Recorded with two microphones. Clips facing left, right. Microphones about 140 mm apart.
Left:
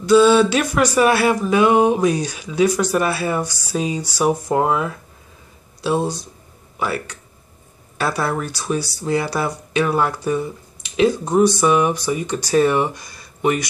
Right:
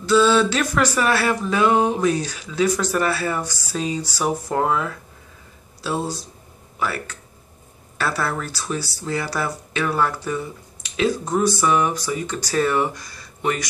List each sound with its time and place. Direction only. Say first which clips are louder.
0.0 s speech: left 4 dB; 15° left (ahead or behind)